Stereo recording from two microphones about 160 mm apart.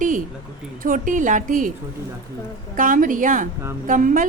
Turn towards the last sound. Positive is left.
turn(degrees=-55)  # may be behind; listen again after turning